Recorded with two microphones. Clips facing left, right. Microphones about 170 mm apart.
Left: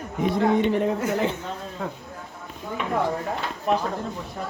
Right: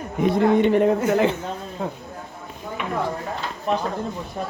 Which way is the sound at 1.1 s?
70° right (ahead or behind).